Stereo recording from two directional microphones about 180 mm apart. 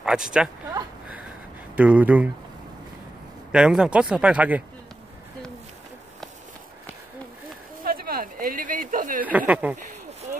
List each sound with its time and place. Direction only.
0.0 s speech: 5° right (ahead or behind)
1.8 s speech: 5° right (ahead or behind)
3.5 s speech: 5° right (ahead or behind)
7.8 s a sound: 55° right (ahead or behind)
9.5 s speech: 5° right (ahead or behind)